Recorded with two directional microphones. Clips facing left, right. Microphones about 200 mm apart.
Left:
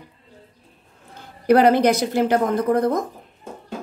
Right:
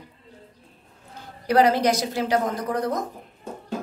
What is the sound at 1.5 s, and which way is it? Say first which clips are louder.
Speech: left 4 dB; 55° left (ahead or behind).